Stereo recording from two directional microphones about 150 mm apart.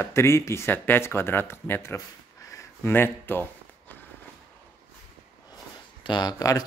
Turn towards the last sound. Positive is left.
turn(degrees=25)  # may be behind; listen again after turning